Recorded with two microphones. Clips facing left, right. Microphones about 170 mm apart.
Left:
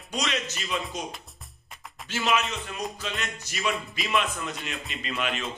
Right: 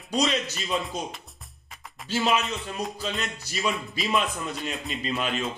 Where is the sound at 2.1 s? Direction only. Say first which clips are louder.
Right 2 dB; 35° right (ahead or behind).